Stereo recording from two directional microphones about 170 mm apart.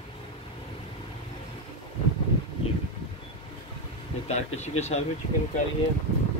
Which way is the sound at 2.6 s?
35° left (ahead or behind).